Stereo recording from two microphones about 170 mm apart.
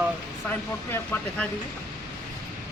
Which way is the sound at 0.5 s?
10° left (ahead or behind).